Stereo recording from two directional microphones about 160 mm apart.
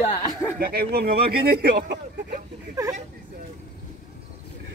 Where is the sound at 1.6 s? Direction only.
90° right.